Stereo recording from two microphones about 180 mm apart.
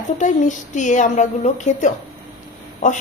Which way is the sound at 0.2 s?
45° left (ahead or behind).